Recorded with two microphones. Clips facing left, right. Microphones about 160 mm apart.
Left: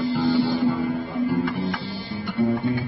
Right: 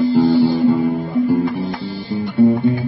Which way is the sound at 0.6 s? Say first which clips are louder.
Right 7 dB; 20° right (ahead or behind).